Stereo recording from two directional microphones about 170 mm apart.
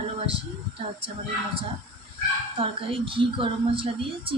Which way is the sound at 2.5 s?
35° right (ahead or behind).